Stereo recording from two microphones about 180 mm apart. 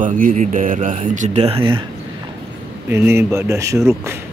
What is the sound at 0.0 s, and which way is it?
Speech, 45° right (ahead or behind).